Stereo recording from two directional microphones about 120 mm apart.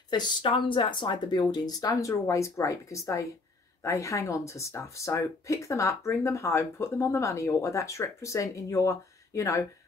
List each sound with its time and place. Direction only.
0.1 s speech: 40° left (ahead or behind)